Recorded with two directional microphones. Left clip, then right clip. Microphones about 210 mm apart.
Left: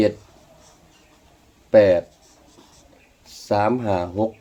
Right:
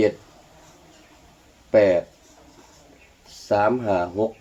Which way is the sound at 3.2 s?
55° left (ahead or behind).